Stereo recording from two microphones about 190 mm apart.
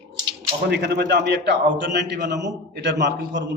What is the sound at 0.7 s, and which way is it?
A man's voice, 60° right (ahead or behind).